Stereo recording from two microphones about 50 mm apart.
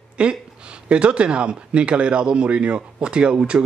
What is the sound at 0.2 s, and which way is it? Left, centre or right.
A man's voice, right.